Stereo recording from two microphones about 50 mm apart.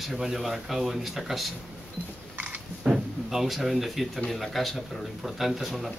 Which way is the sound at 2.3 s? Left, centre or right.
Right.